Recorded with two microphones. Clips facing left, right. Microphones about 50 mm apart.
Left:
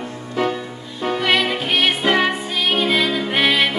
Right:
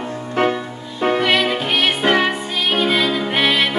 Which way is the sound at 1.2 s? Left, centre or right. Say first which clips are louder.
Right 1 dB; centre.